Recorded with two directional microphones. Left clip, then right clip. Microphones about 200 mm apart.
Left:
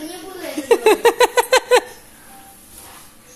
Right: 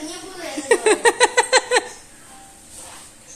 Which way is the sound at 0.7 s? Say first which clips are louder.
Left 3 dB; 20° left (ahead or behind).